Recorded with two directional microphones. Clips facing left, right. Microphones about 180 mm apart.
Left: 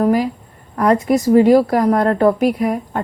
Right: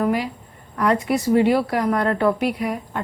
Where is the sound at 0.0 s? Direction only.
40° left (ahead or behind).